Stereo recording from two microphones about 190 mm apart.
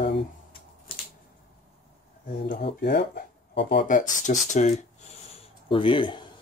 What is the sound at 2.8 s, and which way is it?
Speech, 60° left (ahead or behind).